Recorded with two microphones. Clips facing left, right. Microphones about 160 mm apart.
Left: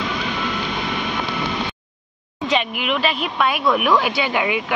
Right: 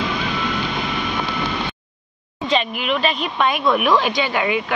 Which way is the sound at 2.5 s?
10° left (ahead or behind).